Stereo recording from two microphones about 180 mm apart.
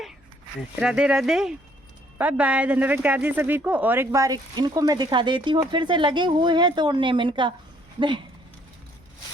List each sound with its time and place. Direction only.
0.8 s speech: 5° right (ahead or behind); by 8.2 s 25° right (ahead or behind)